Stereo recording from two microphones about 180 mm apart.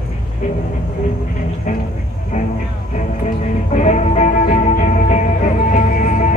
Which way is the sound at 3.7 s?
40° left (ahead or behind).